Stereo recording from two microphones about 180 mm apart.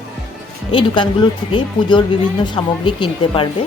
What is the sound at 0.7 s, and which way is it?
Speech, 25° left (ahead or behind).